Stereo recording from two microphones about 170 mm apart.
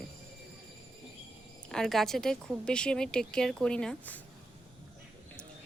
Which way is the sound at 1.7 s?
Centre (ahead or behind).